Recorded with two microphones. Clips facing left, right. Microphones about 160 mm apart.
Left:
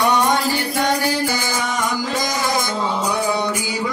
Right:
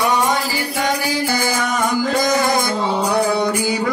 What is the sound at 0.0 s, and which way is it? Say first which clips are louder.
Music: left 1 dB; 5° right (ahead or behind).